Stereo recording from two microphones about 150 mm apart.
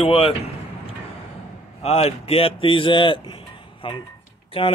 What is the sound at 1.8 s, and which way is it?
A man's voice, 45° left (ahead or behind).